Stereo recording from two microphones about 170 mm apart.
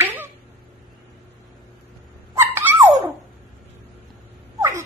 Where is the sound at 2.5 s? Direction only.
10° right (ahead or behind).